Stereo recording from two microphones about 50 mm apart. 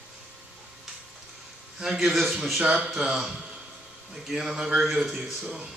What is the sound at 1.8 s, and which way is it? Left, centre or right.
Speech, centre.